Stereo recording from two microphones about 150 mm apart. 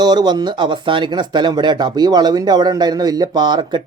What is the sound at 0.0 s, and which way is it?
Speech, 30° right (ahead or behind).